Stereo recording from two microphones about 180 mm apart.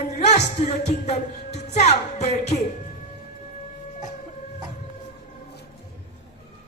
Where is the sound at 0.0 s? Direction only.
40° left (ahead or behind).